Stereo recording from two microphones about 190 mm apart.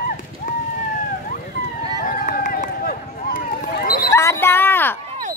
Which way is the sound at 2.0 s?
50° left (ahead or behind).